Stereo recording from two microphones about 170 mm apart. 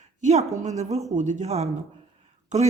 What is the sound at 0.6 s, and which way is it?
Speech, 45° right (ahead or behind).